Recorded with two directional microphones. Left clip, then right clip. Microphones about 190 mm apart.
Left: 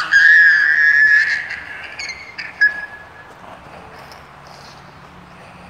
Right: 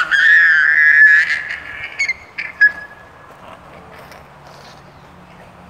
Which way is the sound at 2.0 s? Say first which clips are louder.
Right 11 dB; 30° right (ahead or behind).